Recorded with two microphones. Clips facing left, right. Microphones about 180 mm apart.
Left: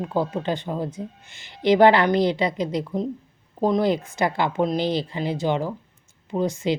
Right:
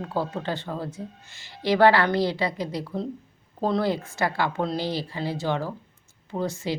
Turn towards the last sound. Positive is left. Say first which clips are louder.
# left 5 dB
turn(degrees=20)  # may be behind; listen again after turning